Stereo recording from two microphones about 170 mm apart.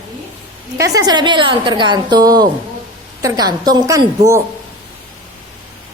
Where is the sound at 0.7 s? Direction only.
20° right (ahead or behind).